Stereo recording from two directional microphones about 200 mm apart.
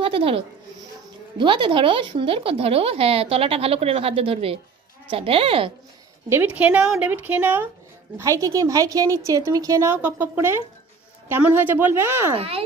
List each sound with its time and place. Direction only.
0.0 s a sound: 30° right (ahead or behind)
1.4 s speech: 25° right (ahead or behind)
6.2 s a woman's voice: 10° right (ahead or behind)
12.4 s speech: 30° right (ahead or behind)